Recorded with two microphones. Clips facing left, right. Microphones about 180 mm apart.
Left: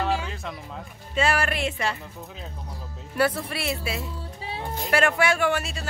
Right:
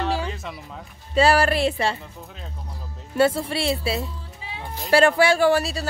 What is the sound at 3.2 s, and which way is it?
Speech, 25° right (ahead or behind).